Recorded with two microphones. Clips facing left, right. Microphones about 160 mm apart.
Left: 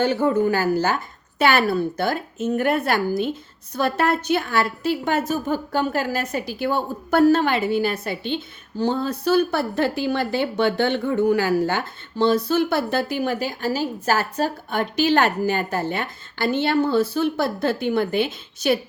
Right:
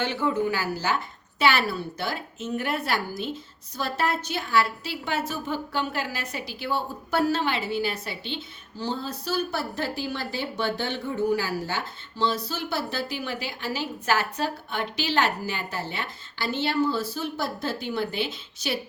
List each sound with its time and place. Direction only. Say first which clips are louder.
0.0 s a woman's voice: left 6 dB; 45° left (ahead or behind)